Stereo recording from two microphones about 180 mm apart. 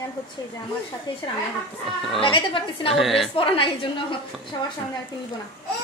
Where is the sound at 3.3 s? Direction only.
30° left (ahead or behind).